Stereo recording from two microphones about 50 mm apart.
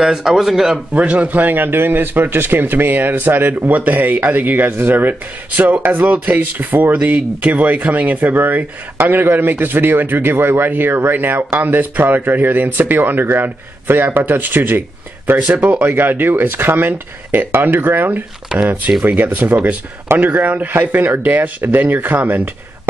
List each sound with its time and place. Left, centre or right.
0.0 s speech: centre
0.9 s a man's voice: right
15.8 s a man's voice: right
21.2 s a man's voice: right